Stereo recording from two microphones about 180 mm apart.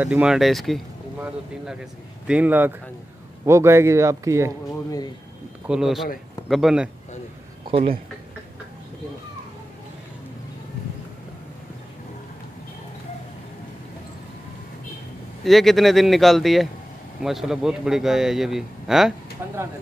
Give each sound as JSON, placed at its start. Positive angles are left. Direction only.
{"t": 0.0, "sound": "speech", "side_deg": -5}
{"t": 5.7, "sound": "a man's voice", "side_deg": 0}
{"t": 7.6, "sound": "speech", "side_deg": -30}
{"t": 15.4, "sound": "a man's voice", "side_deg": 0}